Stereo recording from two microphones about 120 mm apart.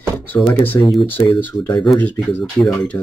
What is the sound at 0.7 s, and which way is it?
Speech, 30° left (ahead or behind).